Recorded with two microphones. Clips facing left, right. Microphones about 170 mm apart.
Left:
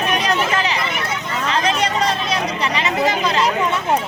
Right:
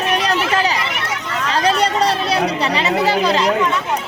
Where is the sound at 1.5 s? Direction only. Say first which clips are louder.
Right 3 dB; 35° right (ahead or behind).